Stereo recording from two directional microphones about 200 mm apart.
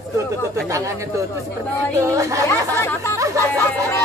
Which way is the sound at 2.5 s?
10° left (ahead or behind).